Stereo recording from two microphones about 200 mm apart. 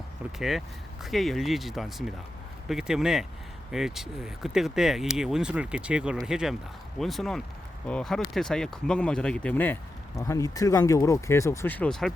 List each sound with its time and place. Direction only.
0.3 s speech: centre (ahead or behind)